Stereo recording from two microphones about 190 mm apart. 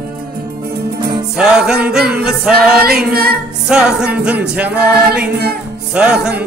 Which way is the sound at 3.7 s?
5° right (ahead or behind).